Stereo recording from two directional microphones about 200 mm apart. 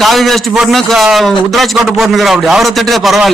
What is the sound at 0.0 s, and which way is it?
A man's voice, centre (ahead or behind).